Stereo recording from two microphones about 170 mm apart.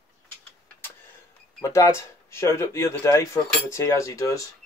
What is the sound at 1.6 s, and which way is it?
Speech, 20° left (ahead or behind).